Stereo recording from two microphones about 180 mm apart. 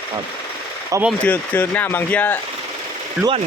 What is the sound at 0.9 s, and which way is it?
Speech, 15° right (ahead or behind).